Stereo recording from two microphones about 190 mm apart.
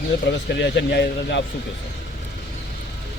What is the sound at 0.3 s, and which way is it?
A man's voice, 65° left (ahead or behind).